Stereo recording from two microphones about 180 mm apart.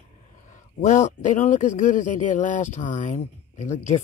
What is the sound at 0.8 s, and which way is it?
Speech, 45° left (ahead or behind).